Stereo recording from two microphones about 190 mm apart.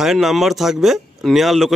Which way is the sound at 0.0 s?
Centre (ahead or behind).